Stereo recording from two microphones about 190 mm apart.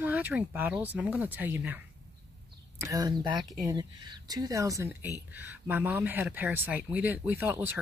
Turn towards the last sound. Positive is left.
turn(degrees=-10)  # may be behind; listen again after turning